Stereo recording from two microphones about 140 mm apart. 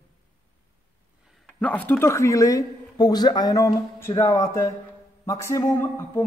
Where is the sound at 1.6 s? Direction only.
10° left (ahead or behind).